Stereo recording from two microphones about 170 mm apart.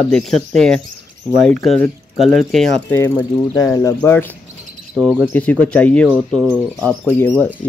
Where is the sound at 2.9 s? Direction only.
10° left (ahead or behind).